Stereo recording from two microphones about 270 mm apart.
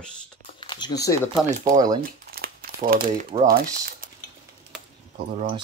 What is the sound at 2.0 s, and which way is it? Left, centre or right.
Crumpling, right.